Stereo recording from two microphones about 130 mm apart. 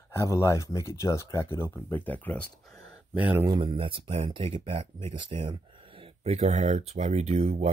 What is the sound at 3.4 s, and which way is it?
Speech, 40° right (ahead or behind).